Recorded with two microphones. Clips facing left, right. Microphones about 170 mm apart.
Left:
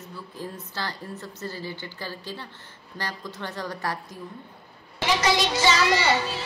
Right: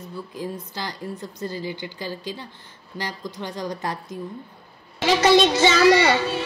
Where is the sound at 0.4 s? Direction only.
15° right (ahead or behind).